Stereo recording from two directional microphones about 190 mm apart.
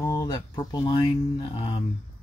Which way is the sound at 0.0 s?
20° left (ahead or behind).